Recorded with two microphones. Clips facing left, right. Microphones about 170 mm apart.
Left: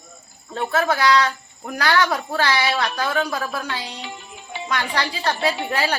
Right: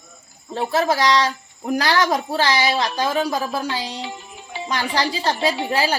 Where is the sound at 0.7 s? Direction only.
30° right (ahead or behind).